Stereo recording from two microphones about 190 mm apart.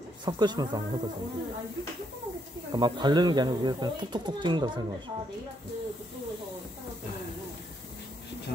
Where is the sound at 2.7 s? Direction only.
25° right (ahead or behind).